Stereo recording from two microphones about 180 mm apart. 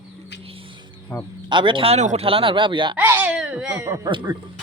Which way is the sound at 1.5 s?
25° right (ahead or behind).